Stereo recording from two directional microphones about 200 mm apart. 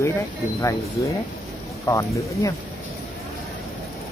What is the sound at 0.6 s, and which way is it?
Speech, 15° left (ahead or behind).